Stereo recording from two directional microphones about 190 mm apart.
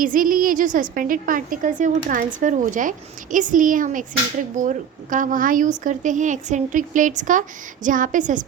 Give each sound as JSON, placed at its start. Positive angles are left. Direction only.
{"t": 0.0, "sound": "a woman's voice", "side_deg": -45}